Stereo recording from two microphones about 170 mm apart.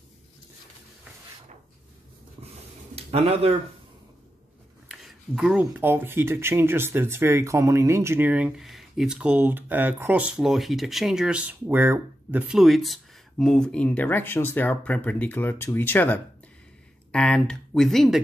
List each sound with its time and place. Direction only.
3.0 s speech: 35° right (ahead or behind)
4.9 s speech: centre (ahead or behind)